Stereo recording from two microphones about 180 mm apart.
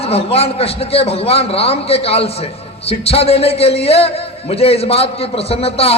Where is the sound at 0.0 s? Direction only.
35° left (ahead or behind).